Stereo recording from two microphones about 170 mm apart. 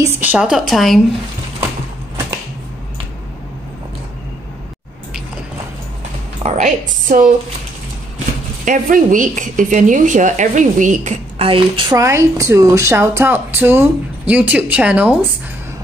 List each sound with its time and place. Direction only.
0.0 s a woman's voice: 10° right (ahead or behind)
6.4 s a woman's voice: 50° right (ahead or behind)
8.6 s a woman's voice: 50° right (ahead or behind); by 12.0 s 30° right (ahead or behind)
12.0 s a woman's voice: 15° right (ahead or behind)